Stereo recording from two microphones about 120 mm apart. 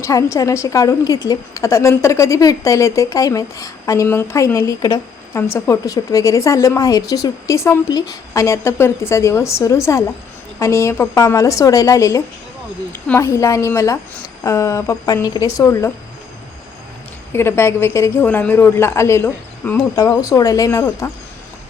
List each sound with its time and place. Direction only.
0.0 s a woman's voice: 25° left (ahead or behind)
17.3 s a woman's voice: 20° left (ahead or behind)